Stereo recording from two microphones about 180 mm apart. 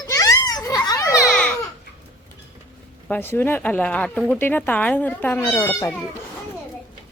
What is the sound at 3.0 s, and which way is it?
Speech, 10° left (ahead or behind).